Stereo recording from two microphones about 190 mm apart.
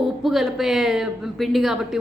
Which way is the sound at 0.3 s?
Centre (ahead or behind).